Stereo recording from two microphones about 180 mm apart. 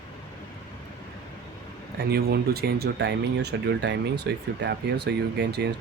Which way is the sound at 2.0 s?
65° right (ahead or behind).